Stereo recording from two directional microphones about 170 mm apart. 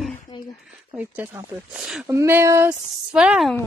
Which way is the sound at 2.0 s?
15° right (ahead or behind).